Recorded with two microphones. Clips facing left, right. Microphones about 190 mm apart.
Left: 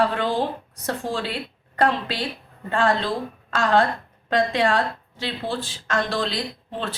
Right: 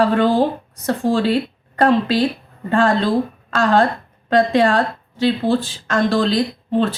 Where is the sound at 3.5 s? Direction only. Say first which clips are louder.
Right 4 dB; 40° right (ahead or behind).